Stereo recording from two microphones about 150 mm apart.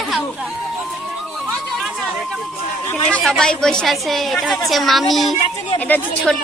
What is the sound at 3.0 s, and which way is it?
A woman's voice, 5° left (ahead or behind).